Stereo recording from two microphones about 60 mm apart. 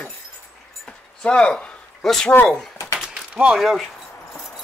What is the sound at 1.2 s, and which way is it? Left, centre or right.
Speech, centre.